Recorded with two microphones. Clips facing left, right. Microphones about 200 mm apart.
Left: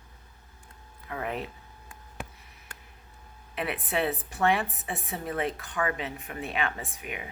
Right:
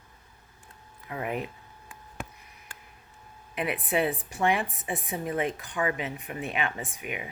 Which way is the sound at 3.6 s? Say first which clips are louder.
Right 2 dB; 10° right (ahead or behind).